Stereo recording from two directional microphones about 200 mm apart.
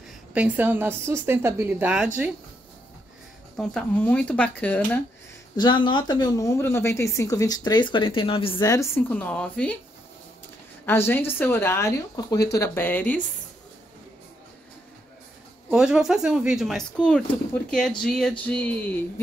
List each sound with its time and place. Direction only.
0.3 s a woman's voice: 10° right (ahead or behind)
3.5 s speech: 5° left (ahead or behind)
5.6 s a woman's voice: 25° left (ahead or behind)
8.6 s speech: 15° left (ahead or behind)
10.9 s speech: 10° left (ahead or behind)
15.7 s speech: 5° right (ahead or behind)